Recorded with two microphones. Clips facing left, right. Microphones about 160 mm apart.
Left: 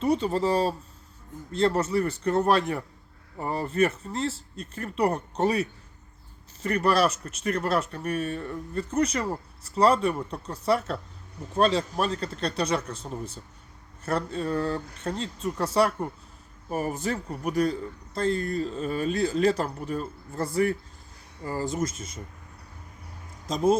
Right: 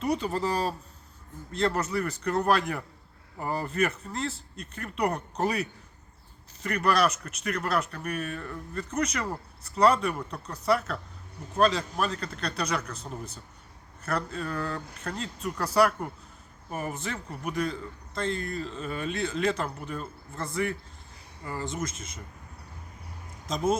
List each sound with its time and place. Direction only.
0.0 s a man's voice: 30° left (ahead or behind)